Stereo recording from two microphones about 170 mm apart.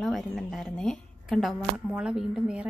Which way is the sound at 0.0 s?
Centre (ahead or behind).